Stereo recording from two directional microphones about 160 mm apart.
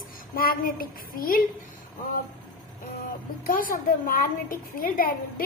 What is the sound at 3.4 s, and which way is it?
A woman's voice, 60° left (ahead or behind).